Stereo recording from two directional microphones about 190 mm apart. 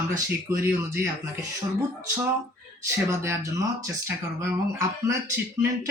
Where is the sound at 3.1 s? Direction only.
15° right (ahead or behind).